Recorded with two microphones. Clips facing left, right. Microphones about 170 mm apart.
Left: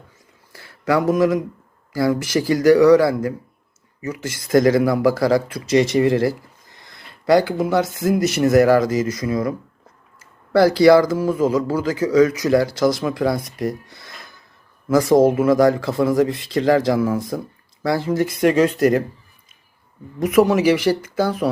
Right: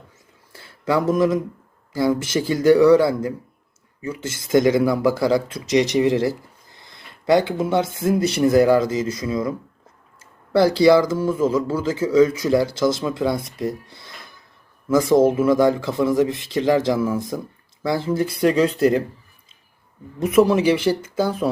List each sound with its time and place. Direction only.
0.5 s a sound: 25° right (ahead or behind)
1.9 s speech: 25° right (ahead or behind)
15.2 s speech: 25° right (ahead or behind)
20.1 s speech: 30° right (ahead or behind)